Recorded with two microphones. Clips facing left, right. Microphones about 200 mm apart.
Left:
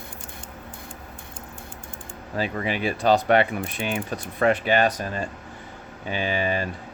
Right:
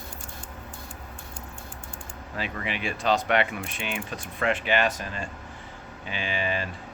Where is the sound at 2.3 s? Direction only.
40° left (ahead or behind).